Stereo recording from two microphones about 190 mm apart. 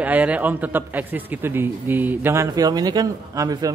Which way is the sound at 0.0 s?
10° right (ahead or behind).